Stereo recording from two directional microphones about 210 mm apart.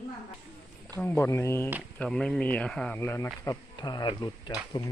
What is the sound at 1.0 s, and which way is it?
Speech, 10° left (ahead or behind).